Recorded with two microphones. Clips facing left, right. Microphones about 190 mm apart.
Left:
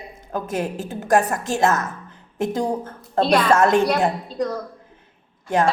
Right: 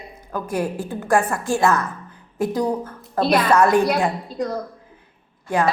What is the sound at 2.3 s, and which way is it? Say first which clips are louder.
Speech: right 1 dB; 25° left (ahead or behind).